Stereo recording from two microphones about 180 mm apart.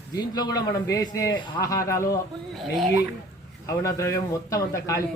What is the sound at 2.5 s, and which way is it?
Speech, centre (ahead or behind).